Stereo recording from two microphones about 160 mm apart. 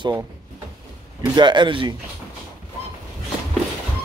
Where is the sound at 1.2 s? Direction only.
30° right (ahead or behind).